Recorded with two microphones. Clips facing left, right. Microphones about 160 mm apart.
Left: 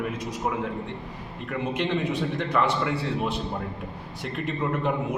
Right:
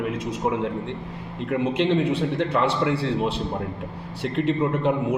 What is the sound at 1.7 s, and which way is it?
A man's voice, 30° right (ahead or behind).